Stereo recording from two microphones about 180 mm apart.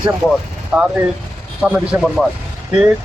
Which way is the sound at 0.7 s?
5° right (ahead or behind).